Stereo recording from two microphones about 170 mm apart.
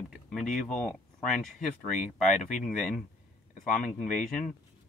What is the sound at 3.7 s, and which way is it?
Speech, 5° left (ahead or behind).